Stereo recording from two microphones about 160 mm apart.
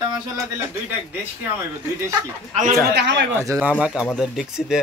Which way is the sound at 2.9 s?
90° right.